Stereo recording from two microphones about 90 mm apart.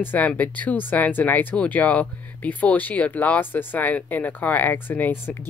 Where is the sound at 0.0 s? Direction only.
20° left (ahead or behind).